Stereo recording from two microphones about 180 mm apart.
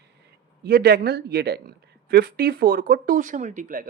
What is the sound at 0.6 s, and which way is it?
A woman's voice, 60° right (ahead or behind).